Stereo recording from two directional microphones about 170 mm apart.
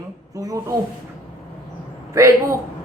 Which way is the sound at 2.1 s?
20° right (ahead or behind).